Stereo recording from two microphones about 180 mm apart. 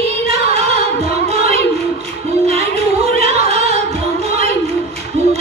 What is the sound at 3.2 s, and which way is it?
Music, 35° right (ahead or behind).